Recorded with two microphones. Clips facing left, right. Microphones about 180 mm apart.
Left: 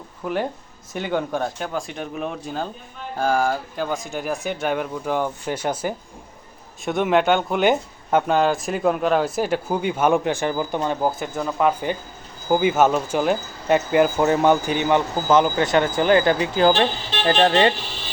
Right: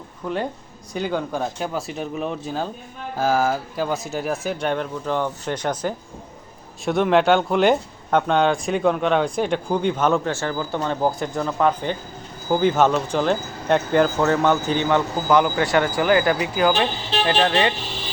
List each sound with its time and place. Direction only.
0.2 s speech: 10° left (ahead or behind)
11.0 s speech: 5° left (ahead or behind)
14.2 s speech: 15° left (ahead or behind); by 17.7 s 35° left (ahead or behind)